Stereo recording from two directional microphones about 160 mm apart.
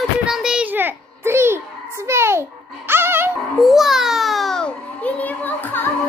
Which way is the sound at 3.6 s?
Centre (ahead or behind).